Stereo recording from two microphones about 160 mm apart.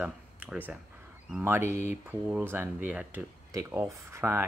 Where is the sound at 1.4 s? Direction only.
15° right (ahead or behind).